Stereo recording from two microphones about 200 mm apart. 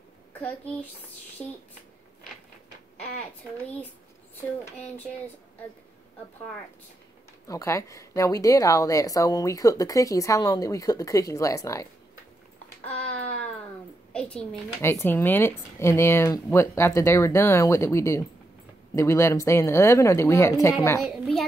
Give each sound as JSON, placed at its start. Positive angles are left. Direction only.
{"t": 0.4, "sound": "a woman's voice", "side_deg": 10}
{"t": 4.6, "sound": "a woman's voice", "side_deg": 10}
{"t": 7.4, "sound": "a woman's voice", "side_deg": 15}
{"t": 12.8, "sound": "a sound", "side_deg": 10}
{"t": 14.1, "sound": "a woman's voice", "side_deg": 5}
{"t": 21.0, "sound": "a child's voice", "side_deg": 0}